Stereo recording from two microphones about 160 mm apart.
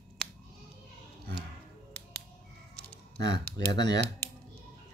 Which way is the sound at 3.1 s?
90° right.